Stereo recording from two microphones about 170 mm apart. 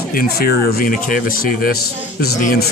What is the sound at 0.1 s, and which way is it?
Speech, 60° left (ahead or behind).